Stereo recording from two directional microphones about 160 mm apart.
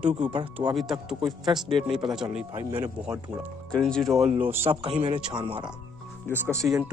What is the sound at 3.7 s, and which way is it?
Speech, 5° left (ahead or behind).